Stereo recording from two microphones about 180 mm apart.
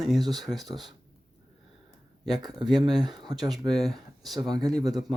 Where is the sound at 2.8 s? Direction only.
Centre (ahead or behind).